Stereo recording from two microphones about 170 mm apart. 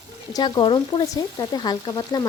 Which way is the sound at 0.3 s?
25° left (ahead or behind).